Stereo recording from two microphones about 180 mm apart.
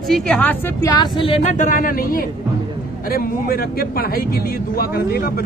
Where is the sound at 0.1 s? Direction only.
5° left (ahead or behind); by 5.4 s 55° left (ahead or behind).